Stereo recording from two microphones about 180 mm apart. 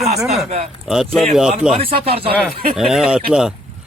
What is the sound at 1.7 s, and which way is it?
Speech, 30° right (ahead or behind).